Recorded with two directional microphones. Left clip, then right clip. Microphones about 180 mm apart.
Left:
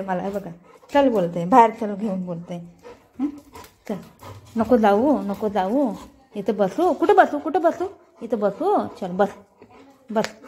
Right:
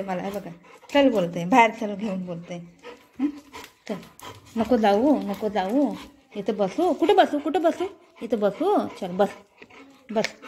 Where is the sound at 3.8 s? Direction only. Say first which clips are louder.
Left 3 dB; centre (ahead or behind).